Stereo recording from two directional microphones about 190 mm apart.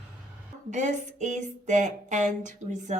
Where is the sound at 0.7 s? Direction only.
40° right (ahead or behind).